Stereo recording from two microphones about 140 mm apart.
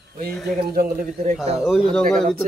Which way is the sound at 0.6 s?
90° right.